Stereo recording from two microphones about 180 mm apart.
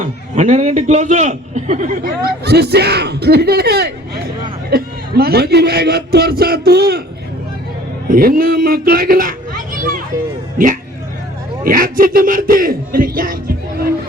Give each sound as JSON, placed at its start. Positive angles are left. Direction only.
{"t": 0.0, "sound": "a man's voice", "side_deg": -40}
{"t": 8.0, "sound": "speech", "side_deg": -50}
{"t": 11.6, "sound": "a man's voice", "side_deg": -50}